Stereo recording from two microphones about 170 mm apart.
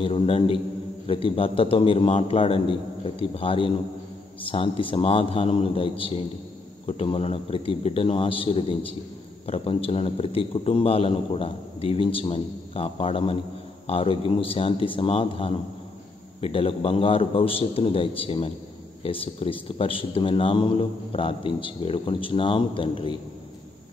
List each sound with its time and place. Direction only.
0.0 s a man's voice: 35° left (ahead or behind)